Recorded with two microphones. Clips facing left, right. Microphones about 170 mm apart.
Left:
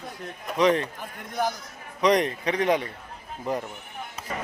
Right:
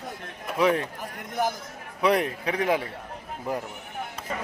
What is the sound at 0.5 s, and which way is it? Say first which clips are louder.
Speech: left 1 dB; 5° right (ahead or behind).